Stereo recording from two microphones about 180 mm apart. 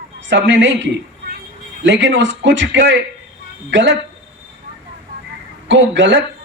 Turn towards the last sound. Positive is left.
turn(degrees=-85)